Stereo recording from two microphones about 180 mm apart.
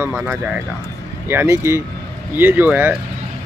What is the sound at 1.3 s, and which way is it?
Speech, 15° right (ahead or behind).